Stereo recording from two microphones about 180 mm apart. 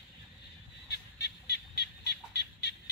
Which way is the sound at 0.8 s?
65° left (ahead or behind).